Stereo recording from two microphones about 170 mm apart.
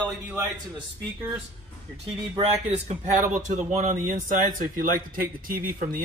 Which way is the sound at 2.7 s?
40° right (ahead or behind).